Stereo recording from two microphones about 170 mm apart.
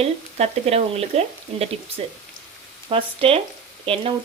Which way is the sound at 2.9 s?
30° right (ahead or behind).